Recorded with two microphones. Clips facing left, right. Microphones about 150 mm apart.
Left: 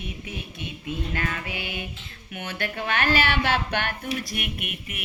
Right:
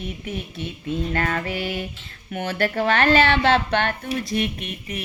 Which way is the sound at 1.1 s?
50° right (ahead or behind).